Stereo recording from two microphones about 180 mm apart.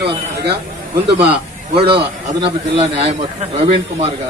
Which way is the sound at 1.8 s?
65° right (ahead or behind).